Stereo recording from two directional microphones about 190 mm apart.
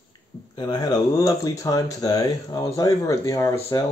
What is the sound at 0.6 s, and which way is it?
Speech, 20° left (ahead or behind).